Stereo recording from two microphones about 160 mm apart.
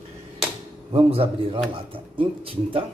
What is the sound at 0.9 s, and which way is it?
A man's voice, 35° right (ahead or behind).